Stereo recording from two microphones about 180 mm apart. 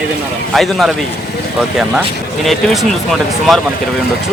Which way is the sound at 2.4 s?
Centre (ahead or behind).